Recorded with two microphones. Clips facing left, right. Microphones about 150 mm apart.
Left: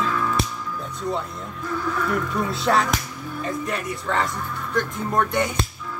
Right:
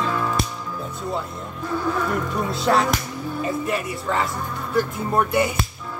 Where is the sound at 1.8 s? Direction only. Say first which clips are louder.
Right 1 dB; 30° right (ahead or behind).